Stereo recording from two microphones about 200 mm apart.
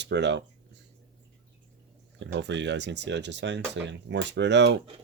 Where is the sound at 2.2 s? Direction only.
60° right (ahead or behind).